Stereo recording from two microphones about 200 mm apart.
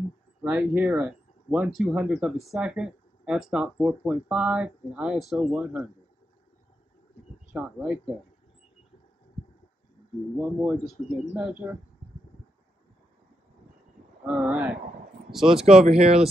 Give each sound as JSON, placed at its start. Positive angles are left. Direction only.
{"t": 0.4, "sound": "speech", "side_deg": -10}
{"t": 7.5, "sound": "speech", "side_deg": -5}
{"t": 10.4, "sound": "speech", "side_deg": -5}
{"t": 14.2, "sound": "speech", "side_deg": -5}
{"t": 15.9, "sound": "speech", "side_deg": -30}